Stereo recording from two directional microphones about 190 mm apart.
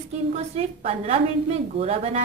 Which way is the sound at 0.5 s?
35° right (ahead or behind).